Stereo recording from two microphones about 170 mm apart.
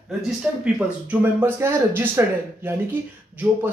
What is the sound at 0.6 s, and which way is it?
Speech, 10° right (ahead or behind).